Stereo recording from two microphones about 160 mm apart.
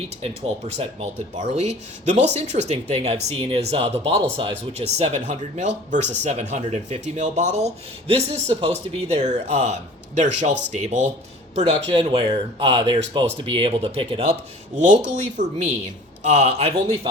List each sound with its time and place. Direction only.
0.8 s speech: 40° right (ahead or behind)
14.8 s speech: 50° right (ahead or behind)